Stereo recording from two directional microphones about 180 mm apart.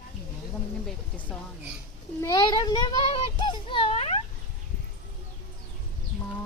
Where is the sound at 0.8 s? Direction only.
10° left (ahead or behind).